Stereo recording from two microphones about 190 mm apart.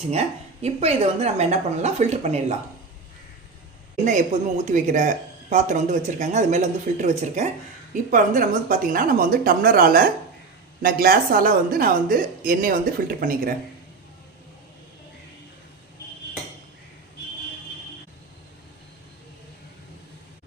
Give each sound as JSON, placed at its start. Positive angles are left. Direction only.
{"t": 0.1, "sound": "speech", "side_deg": -35}
{"t": 4.0, "sound": "speech", "side_deg": -40}